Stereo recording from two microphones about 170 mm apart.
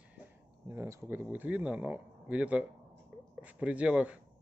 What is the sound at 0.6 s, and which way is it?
Speech, 15° right (ahead or behind).